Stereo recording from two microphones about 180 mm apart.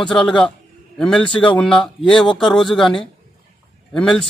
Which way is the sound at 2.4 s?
Centre (ahead or behind).